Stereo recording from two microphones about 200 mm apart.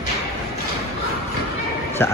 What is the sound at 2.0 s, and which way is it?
Speech, 10° left (ahead or behind).